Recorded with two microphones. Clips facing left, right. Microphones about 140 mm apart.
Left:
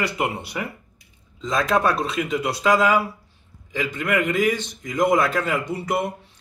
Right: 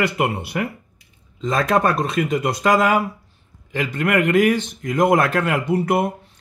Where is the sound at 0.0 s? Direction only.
60° right (ahead or behind).